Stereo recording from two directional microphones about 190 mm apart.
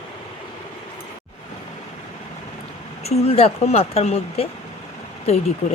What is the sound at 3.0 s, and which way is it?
Speech, 35° left (ahead or behind).